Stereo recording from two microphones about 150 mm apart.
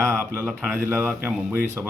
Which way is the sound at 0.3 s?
10° right (ahead or behind).